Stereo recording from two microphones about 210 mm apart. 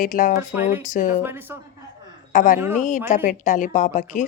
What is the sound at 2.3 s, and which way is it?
A woman's voice, 40° left (ahead or behind).